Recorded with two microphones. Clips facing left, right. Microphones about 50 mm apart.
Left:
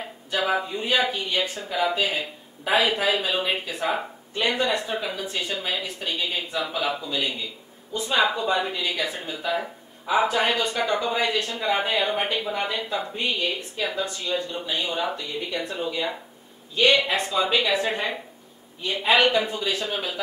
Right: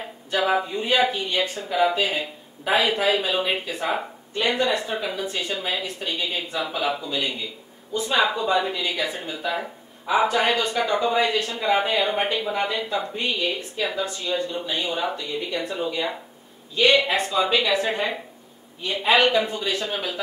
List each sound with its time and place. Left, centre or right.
0.0 s speech: centre
19.3 s speech: centre